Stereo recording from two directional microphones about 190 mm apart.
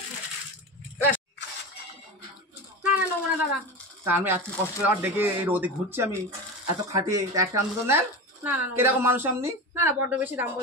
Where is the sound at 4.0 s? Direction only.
10° right (ahead or behind).